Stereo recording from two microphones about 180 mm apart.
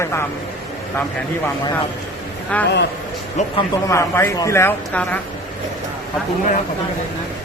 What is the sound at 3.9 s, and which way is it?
Speech, 15° left (ahead or behind).